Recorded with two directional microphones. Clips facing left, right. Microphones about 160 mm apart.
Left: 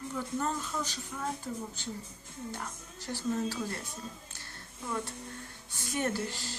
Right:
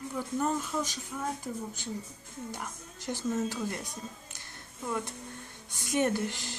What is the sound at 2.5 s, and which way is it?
Speech, 15° right (ahead or behind).